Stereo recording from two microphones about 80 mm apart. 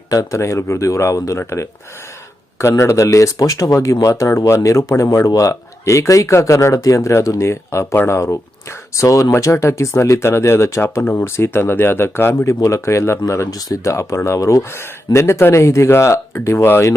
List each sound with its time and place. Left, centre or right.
0.1 s speech: left